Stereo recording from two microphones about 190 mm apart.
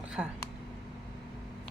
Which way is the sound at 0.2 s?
5° right (ahead or behind).